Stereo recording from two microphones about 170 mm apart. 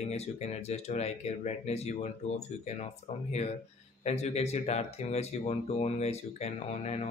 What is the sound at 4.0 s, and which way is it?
Speech, 40° left (ahead or behind).